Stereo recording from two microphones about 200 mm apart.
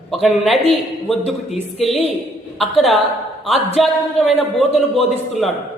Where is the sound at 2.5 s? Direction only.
Centre (ahead or behind).